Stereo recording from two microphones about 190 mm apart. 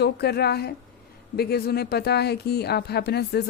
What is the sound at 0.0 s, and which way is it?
Speech, 60° left (ahead or behind).